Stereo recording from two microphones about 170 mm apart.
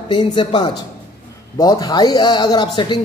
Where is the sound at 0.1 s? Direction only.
25° left (ahead or behind).